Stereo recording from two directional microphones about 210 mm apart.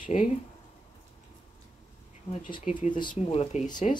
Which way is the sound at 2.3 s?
30° left (ahead or behind).